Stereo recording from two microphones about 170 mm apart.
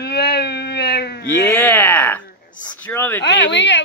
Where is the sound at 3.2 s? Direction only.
90° left.